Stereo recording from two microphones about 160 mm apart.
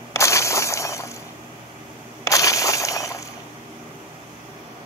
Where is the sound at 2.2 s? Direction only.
20° left (ahead or behind).